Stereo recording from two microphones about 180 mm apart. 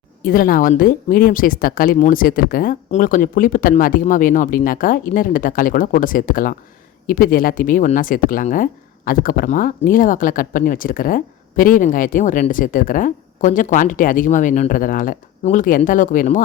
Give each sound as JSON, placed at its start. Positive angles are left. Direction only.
{"t": 0.2, "sound": "speech", "side_deg": 55}